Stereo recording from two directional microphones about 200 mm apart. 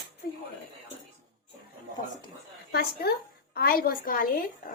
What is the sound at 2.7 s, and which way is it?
A woman's voice, 50° left (ahead or behind).